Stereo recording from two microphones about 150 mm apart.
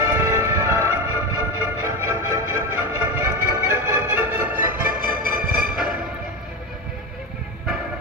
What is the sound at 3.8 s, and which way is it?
Music, 15° right (ahead or behind).